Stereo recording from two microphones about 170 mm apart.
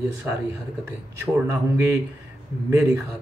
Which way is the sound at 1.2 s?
15° right (ahead or behind).